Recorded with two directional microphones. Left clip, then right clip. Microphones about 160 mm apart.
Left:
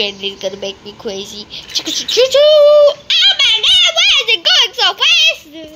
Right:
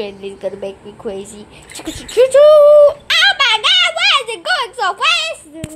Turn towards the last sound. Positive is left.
turn(degrees=0)  # may be behind; listen again after turning